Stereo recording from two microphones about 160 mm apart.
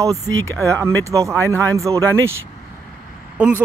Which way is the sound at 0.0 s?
20° right (ahead or behind).